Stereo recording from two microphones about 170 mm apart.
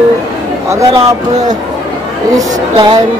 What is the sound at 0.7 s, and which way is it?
Speech, 20° right (ahead or behind).